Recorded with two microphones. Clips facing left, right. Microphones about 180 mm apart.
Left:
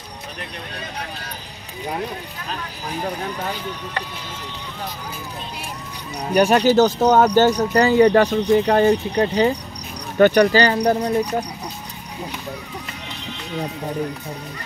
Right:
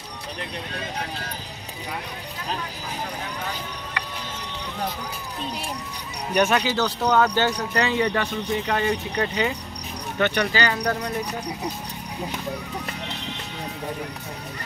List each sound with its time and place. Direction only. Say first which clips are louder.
6.3 s speech: left 7 dB; 40° left (ahead or behind)
10.8 s speech: left 7 dB; 25° left (ahead or behind)